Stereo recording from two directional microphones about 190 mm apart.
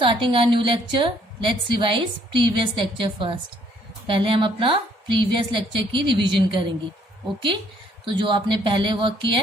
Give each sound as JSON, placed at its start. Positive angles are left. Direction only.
{"t": 0.0, "sound": "a woman's voice", "side_deg": -25}
{"t": 8.0, "sound": "a woman's voice", "side_deg": -25}